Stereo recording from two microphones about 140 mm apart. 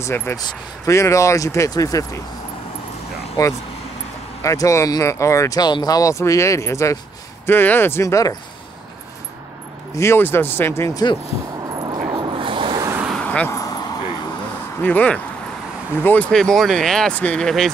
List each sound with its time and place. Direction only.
0.0 s speech: 15° left (ahead or behind)
4.4 s speech: 20° left (ahead or behind)
9.9 s speech: 15° left (ahead or behind)
11.7 s dog: 30° right (ahead or behind)
13.2 s a sound: 10° left (ahead or behind)
13.5 s a sound: 25° left (ahead or behind)
14.8 s speech: 10° left (ahead or behind)